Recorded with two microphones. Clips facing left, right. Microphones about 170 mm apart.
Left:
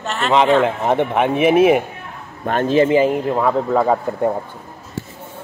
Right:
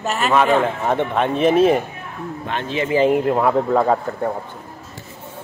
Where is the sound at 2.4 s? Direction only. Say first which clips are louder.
Left 9 dB; 45° left (ahead or behind).